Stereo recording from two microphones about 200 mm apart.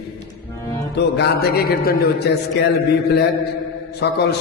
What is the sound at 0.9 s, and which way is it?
A man's voice, 55° left (ahead or behind).